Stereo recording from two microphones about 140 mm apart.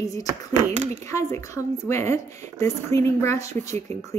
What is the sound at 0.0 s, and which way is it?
A woman's voice, 25° left (ahead or behind).